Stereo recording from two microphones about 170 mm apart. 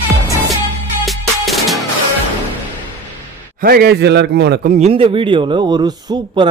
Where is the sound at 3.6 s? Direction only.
60° right (ahead or behind).